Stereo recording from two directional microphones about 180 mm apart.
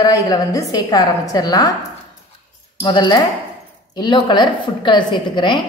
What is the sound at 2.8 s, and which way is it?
A woman's voice, 25° left (ahead or behind).